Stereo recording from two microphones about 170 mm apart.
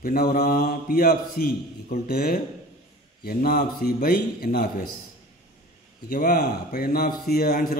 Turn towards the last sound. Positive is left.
turn(degrees=55)  # may be behind; listen again after turning